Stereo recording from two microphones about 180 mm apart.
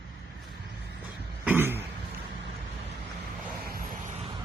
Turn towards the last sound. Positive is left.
turn(degrees=-55)  # may be behind; listen again after turning